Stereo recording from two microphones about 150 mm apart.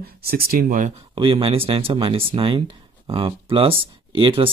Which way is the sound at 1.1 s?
35° right (ahead or behind).